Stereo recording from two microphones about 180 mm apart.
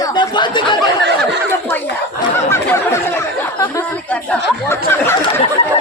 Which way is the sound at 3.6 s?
20° left (ahead or behind).